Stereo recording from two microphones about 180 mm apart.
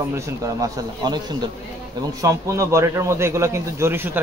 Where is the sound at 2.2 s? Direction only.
15° right (ahead or behind).